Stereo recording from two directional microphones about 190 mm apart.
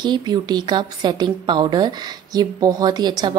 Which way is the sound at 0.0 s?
20° right (ahead or behind).